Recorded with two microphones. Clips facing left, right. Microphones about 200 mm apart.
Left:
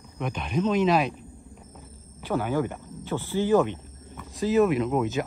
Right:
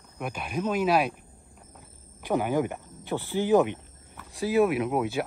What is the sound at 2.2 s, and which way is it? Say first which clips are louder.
Speech: even; 15° right (ahead or behind).